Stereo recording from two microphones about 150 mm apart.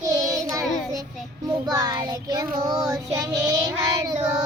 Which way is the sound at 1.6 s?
25° right (ahead or behind).